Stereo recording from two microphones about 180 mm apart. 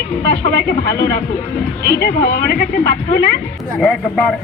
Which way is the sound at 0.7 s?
60° left (ahead or behind).